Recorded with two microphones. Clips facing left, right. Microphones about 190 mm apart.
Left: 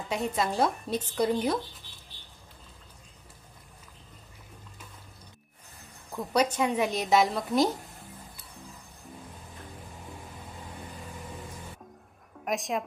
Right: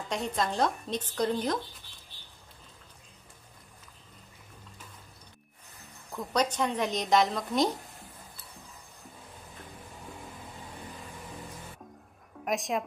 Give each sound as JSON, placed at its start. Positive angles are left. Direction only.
{"t": 0.1, "sound": "speech", "side_deg": 5}
{"t": 6.1, "sound": "speech", "side_deg": 10}
{"t": 12.4, "sound": "a woman's voice", "side_deg": 0}